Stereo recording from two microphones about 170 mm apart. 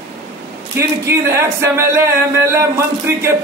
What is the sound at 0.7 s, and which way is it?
A man's voice, 15° right (ahead or behind).